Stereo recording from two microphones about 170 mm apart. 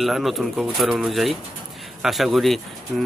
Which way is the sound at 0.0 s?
Centre (ahead or behind).